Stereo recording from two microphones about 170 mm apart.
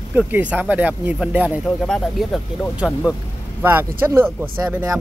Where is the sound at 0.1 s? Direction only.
10° right (ahead or behind).